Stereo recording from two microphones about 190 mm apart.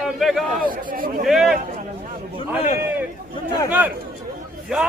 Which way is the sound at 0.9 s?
50° right (ahead or behind).